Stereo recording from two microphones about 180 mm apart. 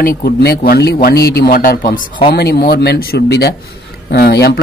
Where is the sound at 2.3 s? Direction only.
60° left (ahead or behind).